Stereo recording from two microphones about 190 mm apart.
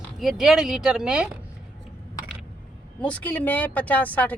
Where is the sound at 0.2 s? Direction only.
Centre (ahead or behind).